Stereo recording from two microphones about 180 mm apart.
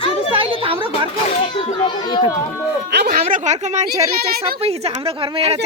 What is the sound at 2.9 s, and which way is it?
A woman's voice, 60° right (ahead or behind).